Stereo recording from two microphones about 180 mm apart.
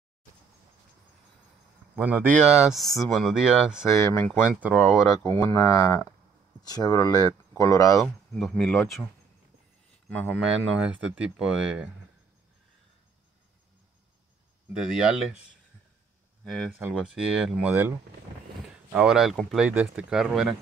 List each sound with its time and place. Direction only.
2.0 s speech: 10° right (ahead or behind)
3.9 s speech: 15° left (ahead or behind)
4.5 s speech: 10° right (ahead or behind)
5.3 s speech: 15° left (ahead or behind)
8.0 s speech: centre (ahead or behind)
10.4 s speech: 5° right (ahead or behind)
14.7 s speech: 5° right (ahead or behind)
16.4 s speech: centre (ahead or behind)